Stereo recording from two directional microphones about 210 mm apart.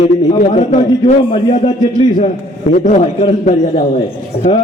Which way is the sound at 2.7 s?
35° left (ahead or behind).